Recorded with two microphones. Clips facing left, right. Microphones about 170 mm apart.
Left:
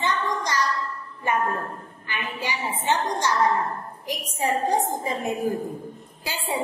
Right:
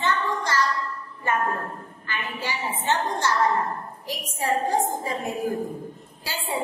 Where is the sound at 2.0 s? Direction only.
15° left (ahead or behind).